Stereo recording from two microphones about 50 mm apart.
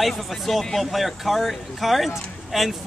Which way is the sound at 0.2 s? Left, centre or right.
Centre.